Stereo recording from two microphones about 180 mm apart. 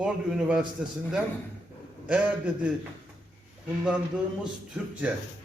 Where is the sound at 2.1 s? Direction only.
5° right (ahead or behind).